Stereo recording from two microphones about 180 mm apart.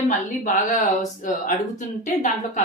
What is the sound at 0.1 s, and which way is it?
Speech, 45° left (ahead or behind).